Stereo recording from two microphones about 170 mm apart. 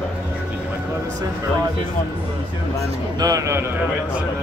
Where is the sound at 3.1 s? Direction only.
20° right (ahead or behind).